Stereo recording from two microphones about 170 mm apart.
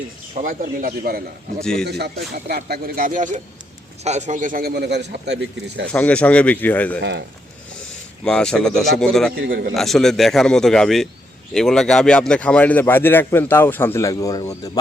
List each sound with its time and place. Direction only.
0.4 s speech: 60° right (ahead or behind)
1.8 s a man's voice: 75° right (ahead or behind); by 5.8 s 90° right
5.9 s a man's voice: 10° left (ahead or behind)
7.0 s speech: 90° right
8.2 s speech: 5° left (ahead or behind)
9.3 s a man's voice: 65° right (ahead or behind)
9.7 s a man's voice: centre (ahead or behind); by 14.7 s 20° left (ahead or behind)